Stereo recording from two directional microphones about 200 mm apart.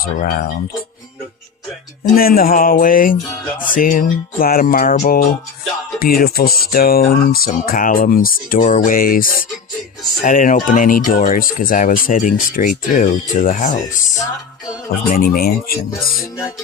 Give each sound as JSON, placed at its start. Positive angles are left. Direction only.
{"t": 0.0, "sound": "speech", "side_deg": 45}
{"t": 2.1, "sound": "speech", "side_deg": 45}
{"t": 15.1, "sound": "speech", "side_deg": 45}